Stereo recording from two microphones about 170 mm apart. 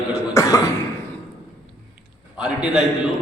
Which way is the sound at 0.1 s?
20° left (ahead or behind).